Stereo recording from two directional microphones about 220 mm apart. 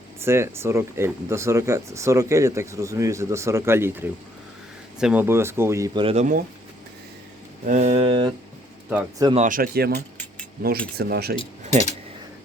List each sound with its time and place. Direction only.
0.2 s speech: 10° right (ahead or behind)
7.6 s a sound: 35° right (ahead or behind)
8.9 s speech: 5° right (ahead or behind)
9.2 s speech: 30° right (ahead or behind)
10.9 s speech: 45° right (ahead or behind)